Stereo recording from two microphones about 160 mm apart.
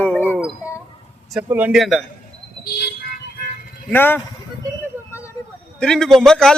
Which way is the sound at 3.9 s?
15° left (ahead or behind).